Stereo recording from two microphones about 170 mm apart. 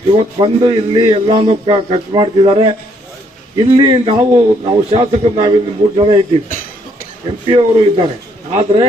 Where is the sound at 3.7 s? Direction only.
30° right (ahead or behind).